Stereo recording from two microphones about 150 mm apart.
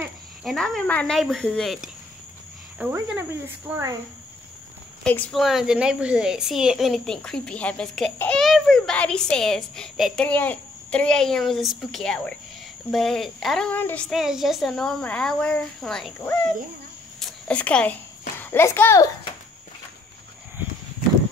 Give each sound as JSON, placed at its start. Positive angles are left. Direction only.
{"t": 0.4, "sound": "speech", "side_deg": 0}
{"t": 2.8, "sound": "insect", "side_deg": -10}
{"t": 5.0, "sound": "speech", "side_deg": 5}
{"t": 10.2, "sound": "speech", "side_deg": 10}
{"t": 17.2, "sound": "cricket", "side_deg": 10}
{"t": 18.4, "sound": "a child's voice", "side_deg": 15}